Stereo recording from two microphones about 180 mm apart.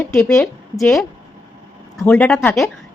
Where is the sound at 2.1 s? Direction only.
5° left (ahead or behind).